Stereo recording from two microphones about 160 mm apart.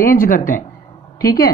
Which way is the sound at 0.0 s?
60° left (ahead or behind).